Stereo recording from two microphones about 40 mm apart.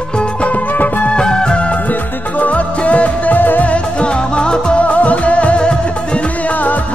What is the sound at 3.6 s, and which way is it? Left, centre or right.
Music, left.